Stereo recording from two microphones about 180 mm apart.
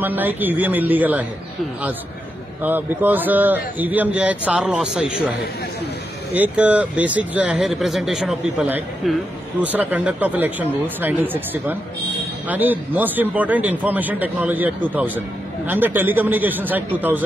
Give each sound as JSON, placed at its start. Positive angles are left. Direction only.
{"t": 0.0, "sound": "a man's voice", "side_deg": -10}
{"t": 2.6, "sound": "a man's voice", "side_deg": -10}
{"t": 6.3, "sound": "a man's voice", "side_deg": -10}